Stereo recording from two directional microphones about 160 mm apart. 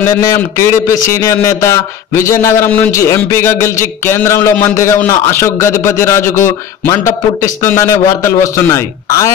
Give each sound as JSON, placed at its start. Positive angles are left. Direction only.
{"t": 0.0, "sound": "a man's voice", "side_deg": 20}